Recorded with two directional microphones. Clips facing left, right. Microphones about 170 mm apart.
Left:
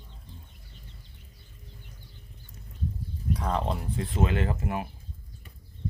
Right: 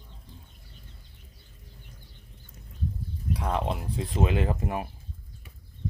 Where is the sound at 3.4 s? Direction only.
5° right (ahead or behind); by 4.9 s 25° right (ahead or behind).